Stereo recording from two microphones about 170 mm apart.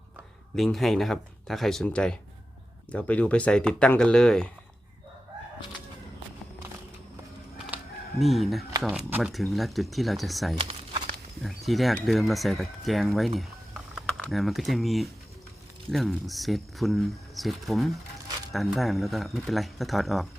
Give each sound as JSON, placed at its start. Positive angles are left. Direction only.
{"t": 0.5, "sound": "speech", "side_deg": 0}
{"t": 7.7, "sound": "a sound", "side_deg": -10}
{"t": 8.2, "sound": "speech", "side_deg": 0}
{"t": 10.6, "sound": "crumpling", "side_deg": -30}
{"t": 11.4, "sound": "speech", "side_deg": 0}